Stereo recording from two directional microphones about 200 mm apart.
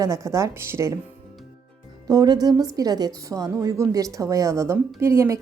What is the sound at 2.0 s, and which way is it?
A woman's voice, 20° right (ahead or behind).